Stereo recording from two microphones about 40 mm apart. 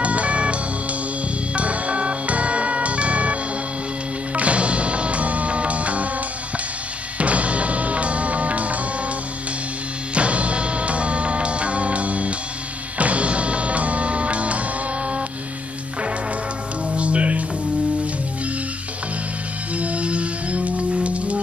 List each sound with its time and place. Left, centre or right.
0.0 s music: right
4.4 s music: right
7.2 s music: right
10.1 s music: right
16.9 s music: right
19.8 s music: right